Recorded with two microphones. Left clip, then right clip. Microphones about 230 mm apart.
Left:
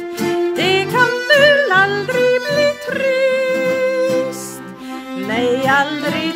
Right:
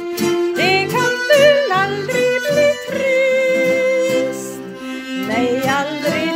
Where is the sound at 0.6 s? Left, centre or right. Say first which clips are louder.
Left 3 dB; centre.